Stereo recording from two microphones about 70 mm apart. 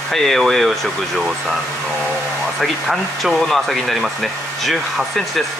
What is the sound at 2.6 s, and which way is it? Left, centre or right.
Speech, centre.